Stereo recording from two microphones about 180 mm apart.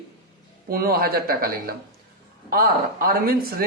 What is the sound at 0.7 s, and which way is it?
Speech, 55° right (ahead or behind).